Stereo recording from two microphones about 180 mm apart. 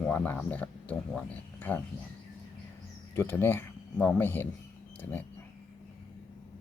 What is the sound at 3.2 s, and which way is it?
Speech, 15° left (ahead or behind).